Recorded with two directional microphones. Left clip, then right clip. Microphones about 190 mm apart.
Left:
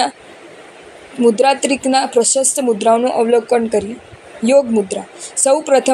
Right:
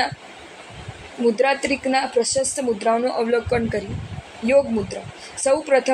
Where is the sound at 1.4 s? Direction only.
40° left (ahead or behind).